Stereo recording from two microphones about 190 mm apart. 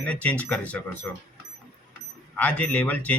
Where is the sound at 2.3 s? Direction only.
5° left (ahead or behind).